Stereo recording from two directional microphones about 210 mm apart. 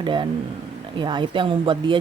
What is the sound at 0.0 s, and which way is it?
Speech, 20° right (ahead or behind).